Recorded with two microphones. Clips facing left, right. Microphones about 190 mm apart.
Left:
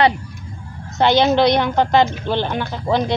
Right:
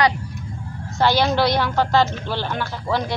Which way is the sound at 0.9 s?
20° left (ahead or behind).